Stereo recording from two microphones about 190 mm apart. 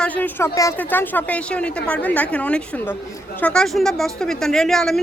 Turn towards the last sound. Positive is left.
turn(degrees=0)  # may be behind; listen again after turning